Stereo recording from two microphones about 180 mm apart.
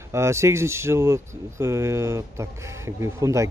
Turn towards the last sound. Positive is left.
turn(degrees=-15)  # may be behind; listen again after turning